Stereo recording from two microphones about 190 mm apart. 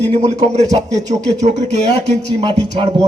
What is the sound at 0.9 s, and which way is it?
Speech, 40° right (ahead or behind).